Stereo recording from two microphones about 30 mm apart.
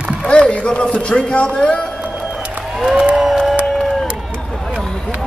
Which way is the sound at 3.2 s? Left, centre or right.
Centre.